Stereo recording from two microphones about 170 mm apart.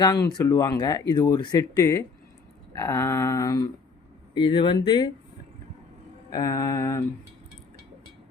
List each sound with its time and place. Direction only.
0.0 s speech: 25° left (ahead or behind)
6.3 s speech: 20° left (ahead or behind)